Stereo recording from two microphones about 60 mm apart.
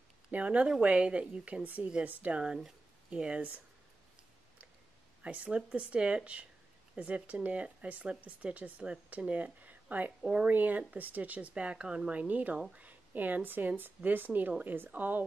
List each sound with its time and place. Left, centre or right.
0.3 s speech: right
5.2 s a woman's voice: right